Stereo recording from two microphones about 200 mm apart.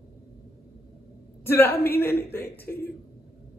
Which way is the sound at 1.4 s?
10° left (ahead or behind).